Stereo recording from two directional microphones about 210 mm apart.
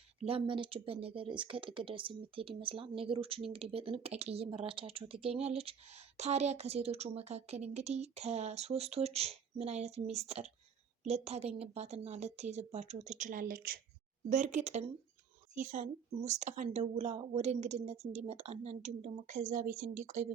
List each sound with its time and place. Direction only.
0.2 s speech: 25° right (ahead or behind)